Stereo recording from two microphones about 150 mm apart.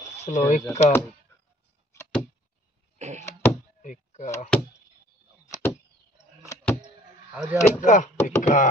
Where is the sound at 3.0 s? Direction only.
50° right (ahead or behind).